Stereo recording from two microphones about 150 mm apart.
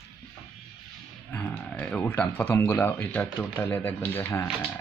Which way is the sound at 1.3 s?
10° left (ahead or behind).